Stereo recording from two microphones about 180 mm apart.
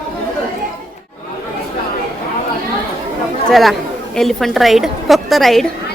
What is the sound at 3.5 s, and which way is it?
A woman's voice, centre (ahead or behind).